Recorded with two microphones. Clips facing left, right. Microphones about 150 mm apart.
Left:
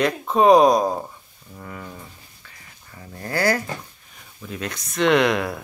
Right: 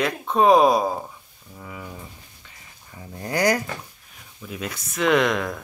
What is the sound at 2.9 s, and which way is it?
Speech, 15° right (ahead or behind).